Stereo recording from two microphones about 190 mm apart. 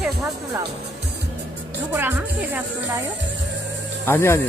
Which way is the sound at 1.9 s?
10° right (ahead or behind).